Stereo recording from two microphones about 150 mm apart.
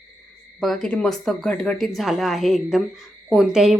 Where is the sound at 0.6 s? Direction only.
5° left (ahead or behind).